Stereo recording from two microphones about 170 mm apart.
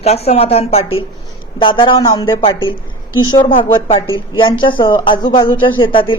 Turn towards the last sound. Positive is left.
turn(degrees=30)  # may be behind; listen again after turning